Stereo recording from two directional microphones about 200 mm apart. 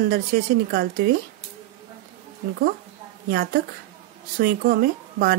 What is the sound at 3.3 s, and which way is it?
Speech, 50° right (ahead or behind).